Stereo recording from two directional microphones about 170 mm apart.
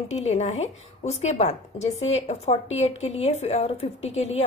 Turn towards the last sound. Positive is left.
turn(degrees=40)  # may be behind; listen again after turning